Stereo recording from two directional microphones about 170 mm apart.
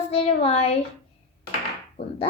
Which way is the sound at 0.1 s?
35° left (ahead or behind).